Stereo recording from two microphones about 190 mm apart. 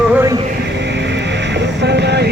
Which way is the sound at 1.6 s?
60° right (ahead or behind).